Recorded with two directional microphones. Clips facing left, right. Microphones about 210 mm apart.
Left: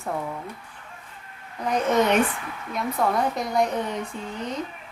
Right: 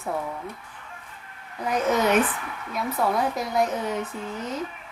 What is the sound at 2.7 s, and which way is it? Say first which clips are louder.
A woman's voice: left 1 dB; centre (ahead or behind).